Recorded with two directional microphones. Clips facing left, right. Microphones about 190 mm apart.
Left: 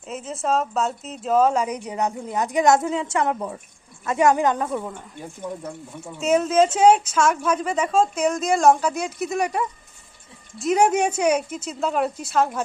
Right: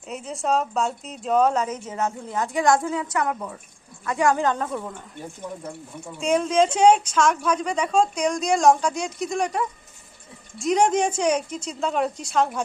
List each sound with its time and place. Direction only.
0.1 s speech: centre (ahead or behind)
1.6 s a woman's voice: 15° left (ahead or behind)
6.1 s a woman's voice: 5° left (ahead or behind)